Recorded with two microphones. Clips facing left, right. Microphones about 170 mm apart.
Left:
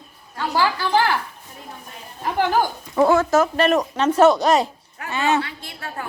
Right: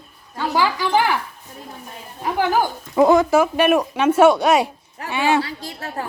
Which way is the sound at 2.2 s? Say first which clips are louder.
Right 1 dB; 10° right (ahead or behind).